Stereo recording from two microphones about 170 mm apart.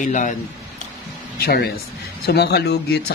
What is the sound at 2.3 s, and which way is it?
Speech, 75° left (ahead or behind).